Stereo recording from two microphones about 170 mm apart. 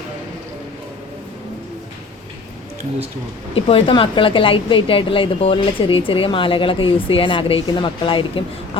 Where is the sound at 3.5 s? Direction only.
35° left (ahead or behind).